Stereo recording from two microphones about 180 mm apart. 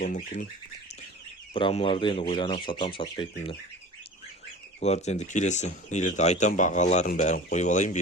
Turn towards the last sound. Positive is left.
turn(degrees=45)  # may be behind; listen again after turning